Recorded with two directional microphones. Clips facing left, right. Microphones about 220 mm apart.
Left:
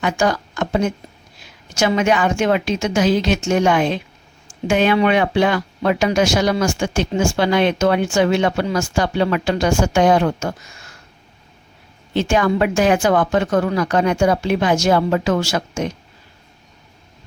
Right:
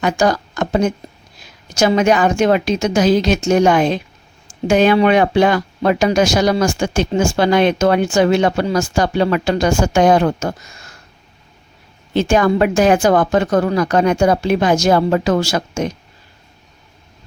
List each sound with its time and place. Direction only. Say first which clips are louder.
0.0 s speech: right 3 dB; 40° right (ahead or behind)
12.1 s speech: right 3 dB; 40° right (ahead or behind)